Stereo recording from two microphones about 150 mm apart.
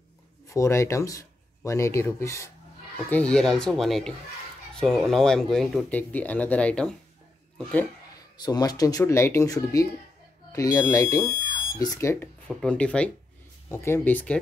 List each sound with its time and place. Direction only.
0.5 s speech: 20° left (ahead or behind)
3.1 s speech: 5° left (ahead or behind)
8.4 s speech: 25° left (ahead or behind)
12.4 s speech: 5° left (ahead or behind)